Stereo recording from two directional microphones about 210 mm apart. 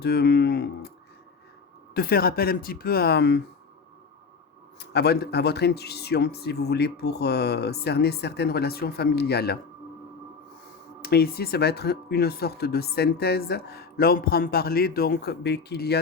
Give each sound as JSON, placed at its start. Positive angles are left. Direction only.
{"t": 0.0, "sound": "a sound", "side_deg": 50}
{"t": 1.9, "sound": "speech", "side_deg": 45}
{"t": 4.8, "sound": "speech", "side_deg": 50}
{"t": 11.0, "sound": "speech", "side_deg": 45}